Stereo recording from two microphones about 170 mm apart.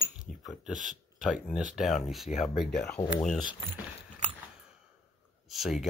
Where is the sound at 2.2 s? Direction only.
40° left (ahead or behind).